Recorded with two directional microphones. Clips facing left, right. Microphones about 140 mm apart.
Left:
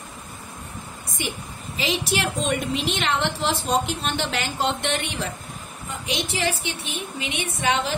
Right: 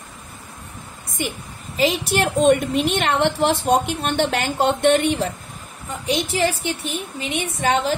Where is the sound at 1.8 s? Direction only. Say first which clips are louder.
Right 6 dB; 45° right (ahead or behind).